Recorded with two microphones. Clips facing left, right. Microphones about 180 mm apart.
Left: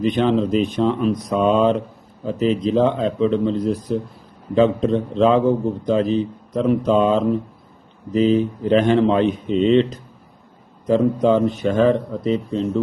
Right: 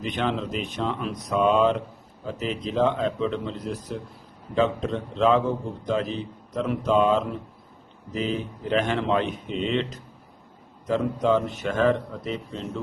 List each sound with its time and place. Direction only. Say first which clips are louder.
0.0 s speech: left 9 dB; 30° left (ahead or behind)
10.8 s speech: left 7 dB; 35° left (ahead or behind)